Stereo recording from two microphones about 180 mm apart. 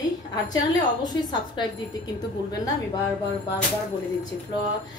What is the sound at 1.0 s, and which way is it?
Speech, 25° left (ahead or behind).